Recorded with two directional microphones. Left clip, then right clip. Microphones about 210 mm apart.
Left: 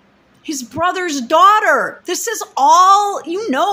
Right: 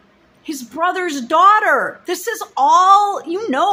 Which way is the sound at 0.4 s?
10° left (ahead or behind).